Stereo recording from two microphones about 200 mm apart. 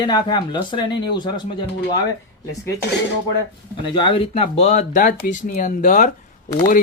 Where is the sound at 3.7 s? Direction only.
25° left (ahead or behind).